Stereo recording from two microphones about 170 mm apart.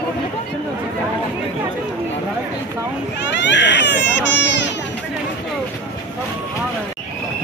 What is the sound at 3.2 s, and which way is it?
Speech, 90° left.